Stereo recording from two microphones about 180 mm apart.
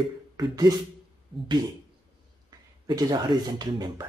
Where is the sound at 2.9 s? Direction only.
20° right (ahead or behind).